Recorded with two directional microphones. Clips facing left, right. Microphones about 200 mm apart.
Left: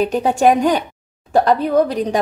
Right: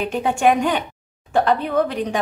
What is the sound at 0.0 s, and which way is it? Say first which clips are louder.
A woman's voice: left 4 dB; 35° left (ahead or behind).